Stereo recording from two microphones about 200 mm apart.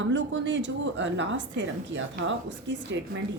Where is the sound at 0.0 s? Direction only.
65° right (ahead or behind).